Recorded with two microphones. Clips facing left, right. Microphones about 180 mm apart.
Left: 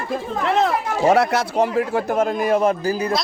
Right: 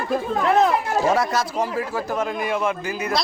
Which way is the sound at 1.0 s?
65° left (ahead or behind).